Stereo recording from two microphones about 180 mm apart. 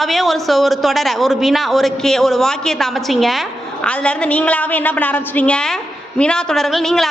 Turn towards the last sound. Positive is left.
turn(degrees=0)  # may be behind; listen again after turning